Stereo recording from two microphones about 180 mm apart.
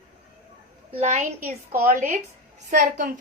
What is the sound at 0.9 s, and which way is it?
A woman's voice, 40° right (ahead or behind).